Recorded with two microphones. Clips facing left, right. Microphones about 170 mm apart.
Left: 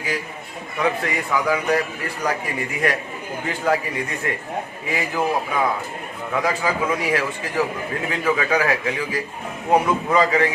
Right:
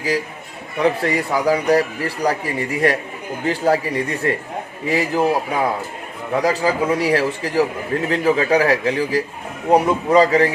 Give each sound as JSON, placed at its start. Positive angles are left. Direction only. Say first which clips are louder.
{"t": 0.8, "sound": "a man's voice", "louder": "right 5 dB", "side_deg": -35}